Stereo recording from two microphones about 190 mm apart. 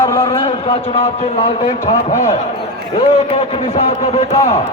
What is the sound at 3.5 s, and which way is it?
A man's voice, 35° left (ahead or behind).